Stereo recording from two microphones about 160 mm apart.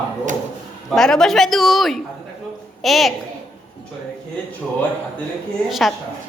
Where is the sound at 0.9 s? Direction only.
Centre (ahead or behind).